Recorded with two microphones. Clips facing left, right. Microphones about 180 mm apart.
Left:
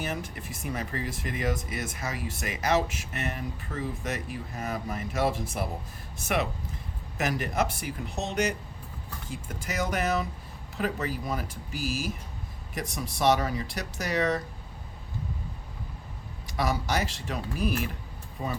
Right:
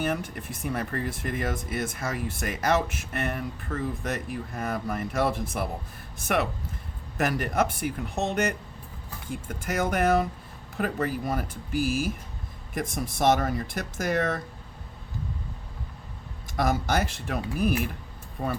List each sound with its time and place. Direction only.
0.0 s speech: 55° right (ahead or behind)
6.2 s speech: 50° right (ahead or behind)
16.5 s speech: 50° right (ahead or behind)